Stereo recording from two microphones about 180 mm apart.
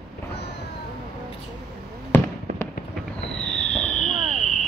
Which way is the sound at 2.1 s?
10° left (ahead or behind).